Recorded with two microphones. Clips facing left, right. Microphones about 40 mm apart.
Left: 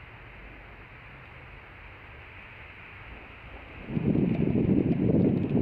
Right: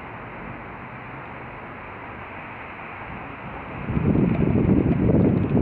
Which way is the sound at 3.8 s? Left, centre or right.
Right.